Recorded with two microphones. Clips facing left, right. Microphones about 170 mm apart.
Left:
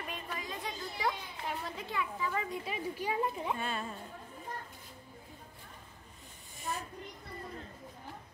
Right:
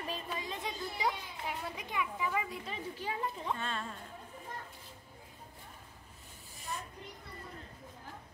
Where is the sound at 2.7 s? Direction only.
10° left (ahead or behind).